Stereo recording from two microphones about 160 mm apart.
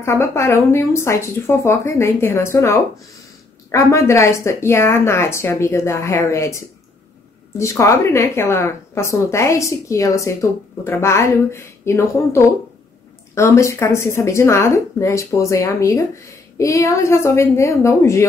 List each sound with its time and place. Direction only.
0.0 s speech: 15° left (ahead or behind)